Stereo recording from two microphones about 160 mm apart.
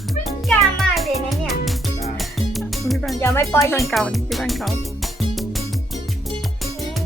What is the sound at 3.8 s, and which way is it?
Speech, centre (ahead or behind).